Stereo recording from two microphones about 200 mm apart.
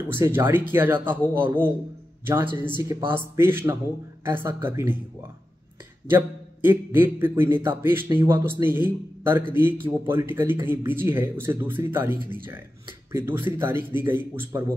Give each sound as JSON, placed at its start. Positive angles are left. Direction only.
{"t": 0.1, "sound": "speech", "side_deg": -10}
{"t": 6.0, "sound": "speech", "side_deg": -10}